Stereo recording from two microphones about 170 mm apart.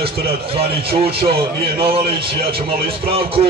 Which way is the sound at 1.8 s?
35° right (ahead or behind).